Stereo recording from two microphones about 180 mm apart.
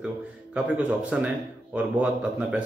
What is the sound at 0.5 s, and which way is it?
A man's voice, 5° right (ahead or behind).